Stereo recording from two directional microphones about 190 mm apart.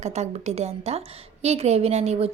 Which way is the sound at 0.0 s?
35° right (ahead or behind).